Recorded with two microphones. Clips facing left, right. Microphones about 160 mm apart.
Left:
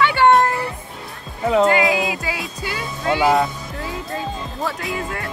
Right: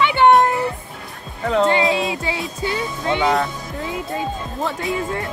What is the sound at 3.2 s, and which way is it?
Speech, 5° left (ahead or behind).